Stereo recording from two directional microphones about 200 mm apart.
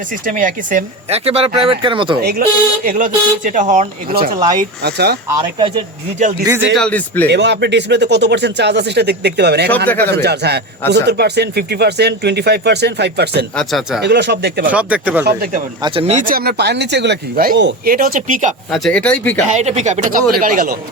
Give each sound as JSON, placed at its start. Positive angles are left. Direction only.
{"t": 0.3, "sound": "speech", "side_deg": -40}
{"t": 2.2, "sound": "speech", "side_deg": -50}
{"t": 6.4, "sound": "speech", "side_deg": -15}
{"t": 6.7, "sound": "speech", "side_deg": 5}
{"t": 7.3, "sound": "speech", "side_deg": -60}
{"t": 13.6, "sound": "speech", "side_deg": 0}
{"t": 14.0, "sound": "speech", "side_deg": -60}
{"t": 14.7, "sound": "speech", "side_deg": -5}
{"t": 15.2, "sound": "speech", "side_deg": -50}
{"t": 15.8, "sound": "speech", "side_deg": -30}
{"t": 16.2, "sound": "speech", "side_deg": -50}
{"t": 18.7, "sound": "speech", "side_deg": 0}
{"t": 19.5, "sound": "speech", "side_deg": -35}